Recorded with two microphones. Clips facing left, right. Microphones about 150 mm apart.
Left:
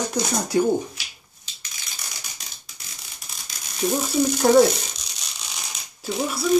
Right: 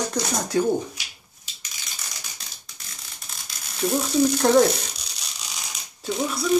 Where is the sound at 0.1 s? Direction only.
10° left (ahead or behind).